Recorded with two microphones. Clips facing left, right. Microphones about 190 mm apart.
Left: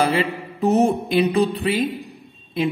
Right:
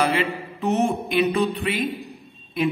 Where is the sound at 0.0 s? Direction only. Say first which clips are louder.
Left 2 dB; 35° left (ahead or behind).